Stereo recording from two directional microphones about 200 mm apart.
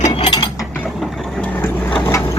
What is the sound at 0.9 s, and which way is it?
Vehicle, centre (ahead or behind).